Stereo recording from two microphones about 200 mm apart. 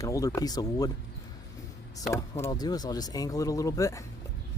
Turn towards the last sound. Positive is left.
turn(degrees=15)  # may be behind; listen again after turning